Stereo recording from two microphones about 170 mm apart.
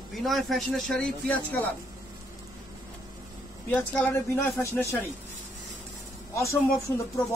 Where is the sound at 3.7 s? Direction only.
10° left (ahead or behind).